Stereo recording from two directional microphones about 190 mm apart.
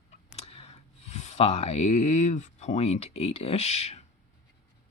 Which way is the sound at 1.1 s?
35° left (ahead or behind).